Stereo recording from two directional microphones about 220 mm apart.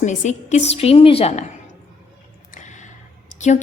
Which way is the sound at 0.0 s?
35° left (ahead or behind).